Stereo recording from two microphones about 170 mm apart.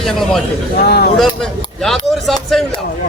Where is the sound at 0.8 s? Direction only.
65° left (ahead or behind).